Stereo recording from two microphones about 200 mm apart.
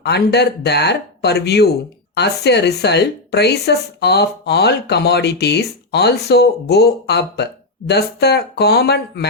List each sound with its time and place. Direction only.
0.0 s speech: 55° left (ahead or behind)